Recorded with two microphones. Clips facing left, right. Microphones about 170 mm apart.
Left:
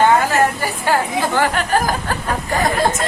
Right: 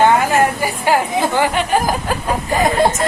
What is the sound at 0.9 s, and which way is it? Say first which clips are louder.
Speech: right 2 dB; 15° right (ahead or behind).